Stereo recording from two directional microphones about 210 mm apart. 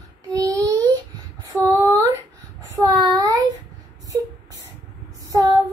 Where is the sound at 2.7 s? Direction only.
20° right (ahead or behind).